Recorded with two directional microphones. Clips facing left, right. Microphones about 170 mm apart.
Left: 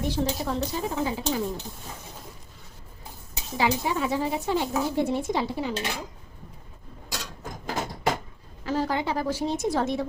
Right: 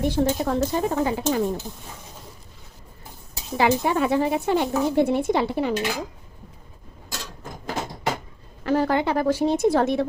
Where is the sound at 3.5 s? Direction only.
55° right (ahead or behind).